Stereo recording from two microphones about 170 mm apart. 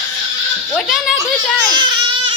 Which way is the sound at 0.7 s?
5° left (ahead or behind).